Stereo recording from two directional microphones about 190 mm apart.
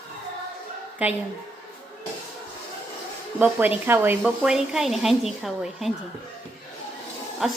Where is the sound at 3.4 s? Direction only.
10° right (ahead or behind).